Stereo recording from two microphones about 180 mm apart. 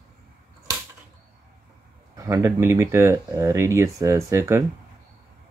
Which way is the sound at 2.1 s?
15° right (ahead or behind).